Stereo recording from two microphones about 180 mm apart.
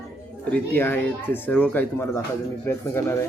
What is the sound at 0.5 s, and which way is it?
Speech, 10° left (ahead or behind).